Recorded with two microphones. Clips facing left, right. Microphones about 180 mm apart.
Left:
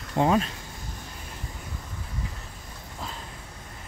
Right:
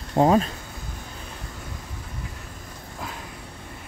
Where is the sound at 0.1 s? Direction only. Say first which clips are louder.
Right 4 dB; 35° right (ahead or behind).